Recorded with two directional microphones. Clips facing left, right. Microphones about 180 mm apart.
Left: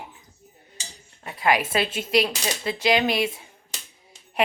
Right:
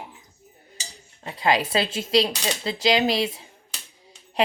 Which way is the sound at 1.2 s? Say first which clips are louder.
Even; 25° right (ahead or behind).